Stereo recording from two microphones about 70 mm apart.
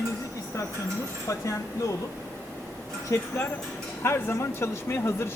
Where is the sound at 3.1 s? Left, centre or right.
Left.